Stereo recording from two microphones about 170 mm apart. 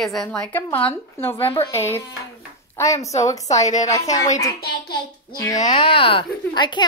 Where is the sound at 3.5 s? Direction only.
45° left (ahead or behind).